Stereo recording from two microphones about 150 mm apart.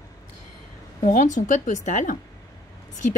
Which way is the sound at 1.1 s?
55° left (ahead or behind).